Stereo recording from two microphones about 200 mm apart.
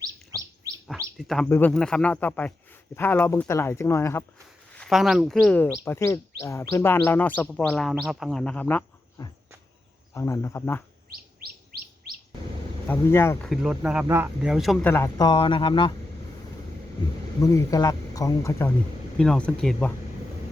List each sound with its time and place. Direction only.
0.0 s chirp: 15° right (ahead or behind)
0.9 s chirp: centre (ahead or behind)
1.5 s speech: 10° left (ahead or behind)
4.7 s speech: centre (ahead or behind)
12.9 s speech: 10° left (ahead or behind)
13.5 s speech: 5° right (ahead or behind); by 15.9 s 25° left (ahead or behind)
17.4 s speech: 15° left (ahead or behind)
19.2 s speech: 5° left (ahead or behind)